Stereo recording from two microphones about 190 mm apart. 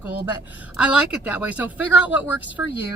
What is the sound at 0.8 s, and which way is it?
Speech, 5° right (ahead or behind).